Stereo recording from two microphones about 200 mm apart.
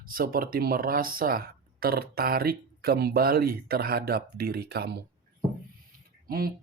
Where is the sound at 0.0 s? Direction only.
45° right (ahead or behind).